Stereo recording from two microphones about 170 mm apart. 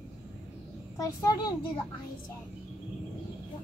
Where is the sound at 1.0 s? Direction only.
20° left (ahead or behind).